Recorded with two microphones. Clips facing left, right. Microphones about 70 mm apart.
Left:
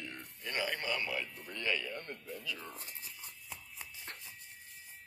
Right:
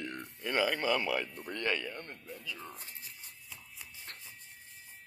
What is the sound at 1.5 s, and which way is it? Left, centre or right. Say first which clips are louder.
Speech: right 2 dB; right.